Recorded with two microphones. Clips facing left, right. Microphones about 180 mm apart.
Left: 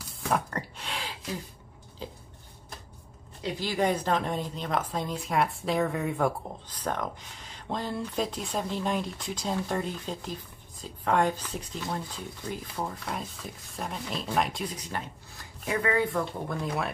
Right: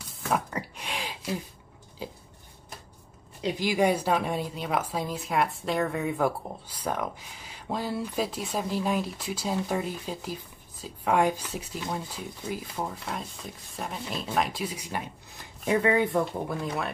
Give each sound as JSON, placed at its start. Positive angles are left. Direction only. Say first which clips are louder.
{"t": 0.3, "sound": "a sound", "louder": "even", "side_deg": -10}
{"t": 3.5, "sound": "speech", "louder": "right 3 dB", "side_deg": -10}
{"t": 15.6, "sound": "speech", "louder": "right 3 dB", "side_deg": -25}
{"t": 16.6, "sound": "speech", "louder": "even", "side_deg": 0}